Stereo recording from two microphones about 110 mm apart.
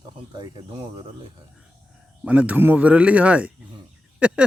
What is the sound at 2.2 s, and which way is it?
Speech, 15° right (ahead or behind).